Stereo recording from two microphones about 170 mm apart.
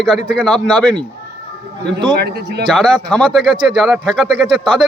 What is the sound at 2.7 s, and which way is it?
Speech, 5° left (ahead or behind).